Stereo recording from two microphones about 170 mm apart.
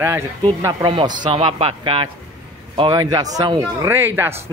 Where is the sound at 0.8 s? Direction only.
25° right (ahead or behind).